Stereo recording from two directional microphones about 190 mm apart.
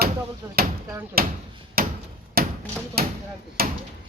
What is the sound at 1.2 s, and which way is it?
Speech, 50° right (ahead or behind).